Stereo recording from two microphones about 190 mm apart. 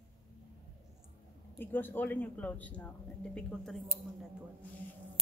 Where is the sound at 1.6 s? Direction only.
10° left (ahead or behind).